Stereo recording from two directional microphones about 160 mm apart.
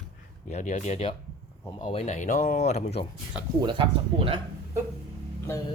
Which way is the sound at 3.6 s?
30° right (ahead or behind).